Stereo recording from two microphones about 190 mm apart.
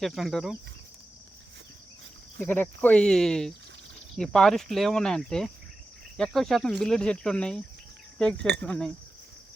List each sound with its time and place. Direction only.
0.0 s speech: centre (ahead or behind)
2.4 s speech: 10° left (ahead or behind)
8.4 s speech: 65° right (ahead or behind)
8.6 s speech: 5° left (ahead or behind)